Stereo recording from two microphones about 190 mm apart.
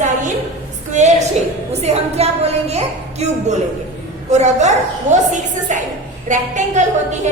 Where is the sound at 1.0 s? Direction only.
40° right (ahead or behind).